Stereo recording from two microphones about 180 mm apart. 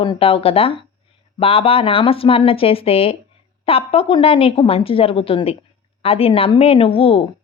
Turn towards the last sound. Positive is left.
turn(degrees=30)  # may be behind; listen again after turning